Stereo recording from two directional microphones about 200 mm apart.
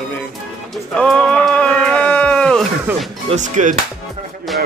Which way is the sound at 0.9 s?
5° left (ahead or behind).